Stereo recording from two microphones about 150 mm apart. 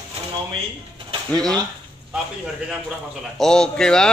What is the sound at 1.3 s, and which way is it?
Speech, 5° left (ahead or behind).